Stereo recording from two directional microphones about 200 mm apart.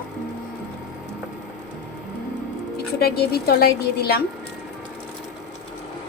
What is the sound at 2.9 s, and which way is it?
A woman's voice, 50° left (ahead or behind).